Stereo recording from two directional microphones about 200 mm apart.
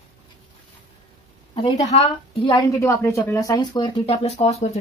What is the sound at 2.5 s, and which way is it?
Speech, 15° left (ahead or behind).